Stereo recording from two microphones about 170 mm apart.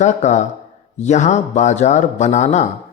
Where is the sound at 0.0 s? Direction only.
45° left (ahead or behind).